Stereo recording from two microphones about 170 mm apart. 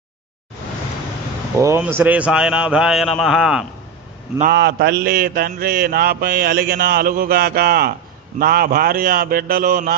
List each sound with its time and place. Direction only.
1.5 s a man's voice: 15° right (ahead or behind)
4.5 s mantra: 75° right (ahead or behind); by 9.9 s 55° right (ahead or behind)